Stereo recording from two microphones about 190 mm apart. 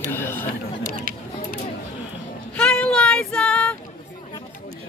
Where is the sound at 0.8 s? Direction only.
50° right (ahead or behind).